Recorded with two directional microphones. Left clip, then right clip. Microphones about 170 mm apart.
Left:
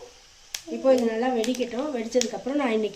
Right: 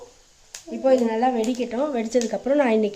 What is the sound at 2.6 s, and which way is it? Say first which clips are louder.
Speech: right 4 dB; 50° right (ahead or behind).